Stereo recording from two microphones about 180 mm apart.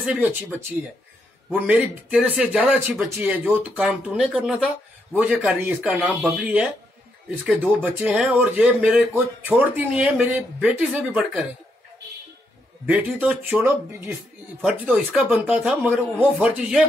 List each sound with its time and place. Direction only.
0.0 s speech: 10° right (ahead or behind)
1.5 s speech: 5° right (ahead or behind)
12.8 s speech: 10° right (ahead or behind)